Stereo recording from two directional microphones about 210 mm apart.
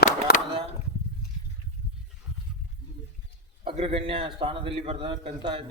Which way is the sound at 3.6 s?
25° right (ahead or behind).